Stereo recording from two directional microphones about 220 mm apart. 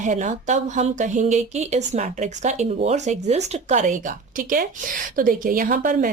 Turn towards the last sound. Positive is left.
turn(degrees=-35)  # may be behind; listen again after turning